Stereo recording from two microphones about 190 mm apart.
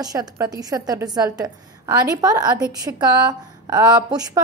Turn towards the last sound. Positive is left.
turn(degrees=-20)  # may be behind; listen again after turning